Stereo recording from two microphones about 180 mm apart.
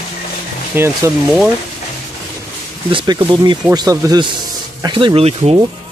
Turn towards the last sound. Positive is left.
turn(degrees=-35)  # may be behind; listen again after turning